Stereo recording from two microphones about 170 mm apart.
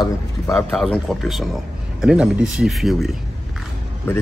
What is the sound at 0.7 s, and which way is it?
A man's voice, centre (ahead or behind).